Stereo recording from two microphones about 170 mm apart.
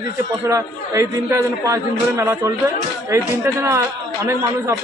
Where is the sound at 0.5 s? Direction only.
20° right (ahead or behind).